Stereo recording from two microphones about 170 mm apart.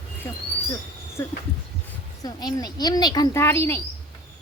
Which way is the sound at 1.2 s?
15° left (ahead or behind).